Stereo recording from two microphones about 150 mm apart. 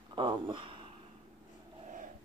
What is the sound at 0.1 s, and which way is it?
Speech, 30° right (ahead or behind).